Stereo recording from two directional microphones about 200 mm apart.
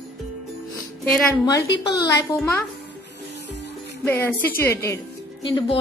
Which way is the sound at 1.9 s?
20° left (ahead or behind).